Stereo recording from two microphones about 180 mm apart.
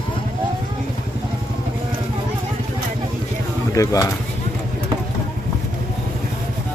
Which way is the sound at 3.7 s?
20° left (ahead or behind).